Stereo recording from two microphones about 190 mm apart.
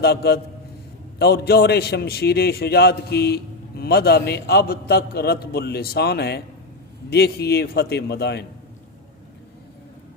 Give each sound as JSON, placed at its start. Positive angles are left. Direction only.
{"t": 0.0, "sound": "a man's voice", "side_deg": 55}